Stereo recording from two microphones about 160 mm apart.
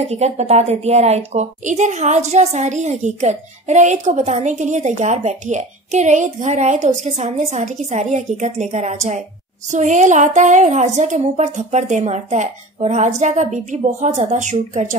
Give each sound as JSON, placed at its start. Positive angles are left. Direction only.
{"t": 0.0, "sound": "a woman's voice", "side_deg": -45}